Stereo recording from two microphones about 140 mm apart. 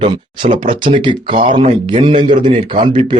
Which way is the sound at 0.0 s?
35° right (ahead or behind).